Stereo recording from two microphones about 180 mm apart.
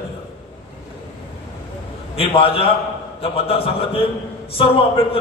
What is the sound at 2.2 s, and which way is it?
A man's voice, 30° left (ahead or behind).